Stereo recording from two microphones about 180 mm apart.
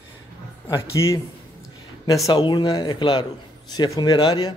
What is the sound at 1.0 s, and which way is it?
Speech, 15° left (ahead or behind).